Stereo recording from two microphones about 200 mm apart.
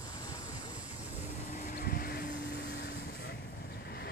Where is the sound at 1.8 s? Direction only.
45° left (ahead or behind).